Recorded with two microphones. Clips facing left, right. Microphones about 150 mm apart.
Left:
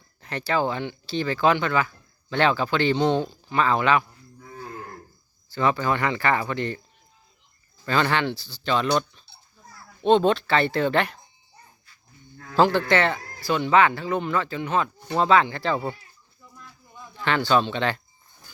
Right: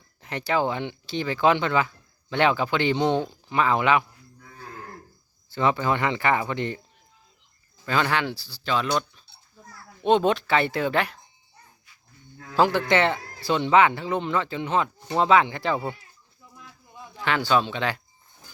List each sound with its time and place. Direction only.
0.2 s speech: 20° right (ahead or behind)
5.5 s speech: 20° right (ahead or behind)
7.9 s speech: 5° right (ahead or behind)
10.0 s speech: 15° right (ahead or behind)
12.5 s speech: 15° right (ahead or behind)
17.2 s speech: 10° right (ahead or behind)